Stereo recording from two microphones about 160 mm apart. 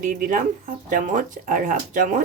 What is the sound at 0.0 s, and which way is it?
Speech, 55° right (ahead or behind).